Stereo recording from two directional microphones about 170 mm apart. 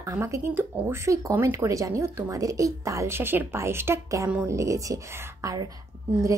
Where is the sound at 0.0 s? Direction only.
15° right (ahead or behind).